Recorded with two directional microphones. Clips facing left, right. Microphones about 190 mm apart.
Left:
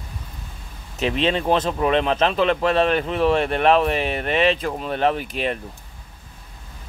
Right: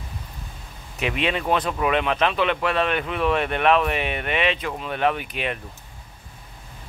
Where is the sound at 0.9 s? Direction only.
35° left (ahead or behind).